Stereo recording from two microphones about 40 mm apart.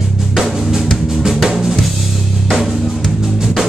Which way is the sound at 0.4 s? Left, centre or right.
Centre.